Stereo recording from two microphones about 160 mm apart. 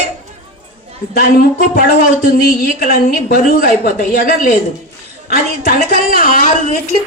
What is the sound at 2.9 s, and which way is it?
A woman's voice, 65° left (ahead or behind).